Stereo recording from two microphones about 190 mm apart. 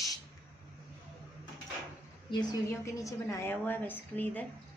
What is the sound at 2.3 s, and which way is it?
A woman's voice, 25° left (ahead or behind).